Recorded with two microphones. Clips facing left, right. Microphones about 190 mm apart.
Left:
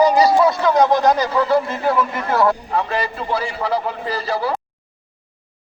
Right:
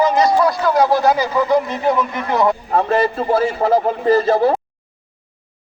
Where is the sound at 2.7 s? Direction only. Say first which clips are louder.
Right 6 dB; 45° right (ahead or behind).